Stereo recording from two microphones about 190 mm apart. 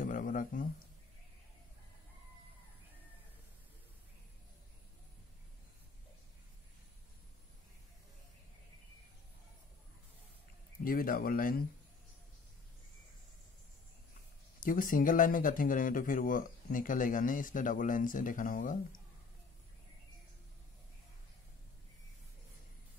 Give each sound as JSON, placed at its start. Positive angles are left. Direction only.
{"t": 0.0, "sound": "a sound", "side_deg": 45}
{"t": 10.8, "sound": "speech", "side_deg": 50}
{"t": 14.6, "sound": "speech", "side_deg": 45}